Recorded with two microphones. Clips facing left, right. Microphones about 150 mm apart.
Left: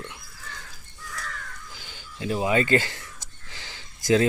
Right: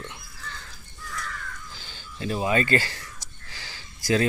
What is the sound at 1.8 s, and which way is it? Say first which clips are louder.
Speech: left 1 dB; 15° left (ahead or behind).